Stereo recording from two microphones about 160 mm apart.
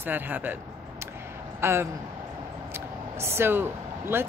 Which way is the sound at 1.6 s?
15° right (ahead or behind).